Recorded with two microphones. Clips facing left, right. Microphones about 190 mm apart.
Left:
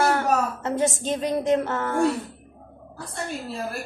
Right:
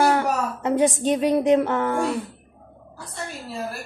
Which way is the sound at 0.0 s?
15° right (ahead or behind).